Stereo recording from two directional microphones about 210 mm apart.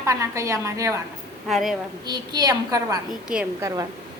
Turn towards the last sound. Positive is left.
turn(degrees=-15)  # may be behind; listen again after turning